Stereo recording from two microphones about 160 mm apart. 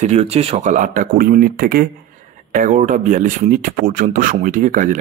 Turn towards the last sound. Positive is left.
turn(degrees=-55)  # may be behind; listen again after turning